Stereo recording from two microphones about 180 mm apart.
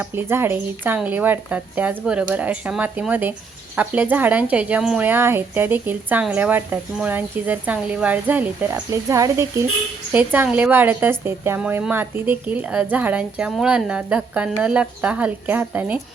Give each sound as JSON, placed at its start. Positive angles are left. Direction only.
{"t": 0.0, "sound": "a woman's voice", "side_deg": -10}